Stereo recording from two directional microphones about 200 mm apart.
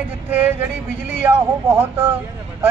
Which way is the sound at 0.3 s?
5° right (ahead or behind).